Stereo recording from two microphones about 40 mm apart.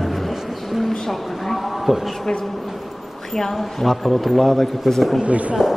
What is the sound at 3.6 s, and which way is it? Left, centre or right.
A man's voice, centre.